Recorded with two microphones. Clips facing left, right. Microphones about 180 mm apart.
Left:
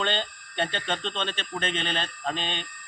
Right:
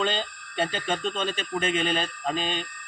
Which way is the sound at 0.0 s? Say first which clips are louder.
Right 1 dB; 5° right (ahead or behind).